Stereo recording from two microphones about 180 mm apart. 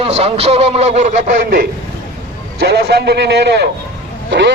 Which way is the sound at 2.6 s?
65° right (ahead or behind).